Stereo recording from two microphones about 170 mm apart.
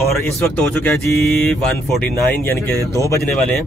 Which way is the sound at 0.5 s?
10° left (ahead or behind).